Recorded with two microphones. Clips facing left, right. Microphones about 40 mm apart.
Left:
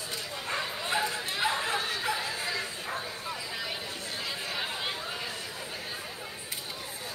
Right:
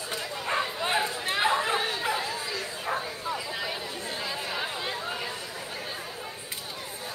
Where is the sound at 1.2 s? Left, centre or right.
Right.